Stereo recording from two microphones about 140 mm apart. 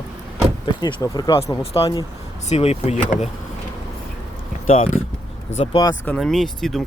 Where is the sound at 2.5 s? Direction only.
45° left (ahead or behind).